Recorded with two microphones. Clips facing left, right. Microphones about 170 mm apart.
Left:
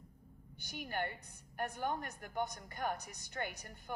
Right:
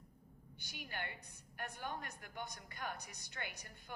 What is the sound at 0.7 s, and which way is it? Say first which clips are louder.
A woman's voice: left 7 dB; 50° left (ahead or behind).